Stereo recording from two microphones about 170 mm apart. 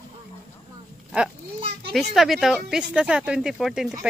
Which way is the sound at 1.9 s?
Centre (ahead or behind).